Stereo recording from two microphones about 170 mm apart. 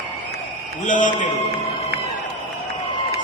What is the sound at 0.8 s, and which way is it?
Speech, 50° left (ahead or behind).